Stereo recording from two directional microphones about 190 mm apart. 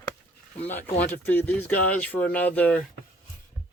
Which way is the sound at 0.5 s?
10° left (ahead or behind).